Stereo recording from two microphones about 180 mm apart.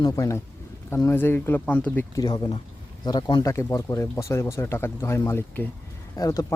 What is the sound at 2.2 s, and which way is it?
Speech, 25° left (ahead or behind).